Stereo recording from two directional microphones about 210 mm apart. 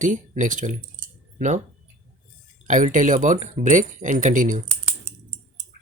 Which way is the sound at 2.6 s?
40° right (ahead or behind).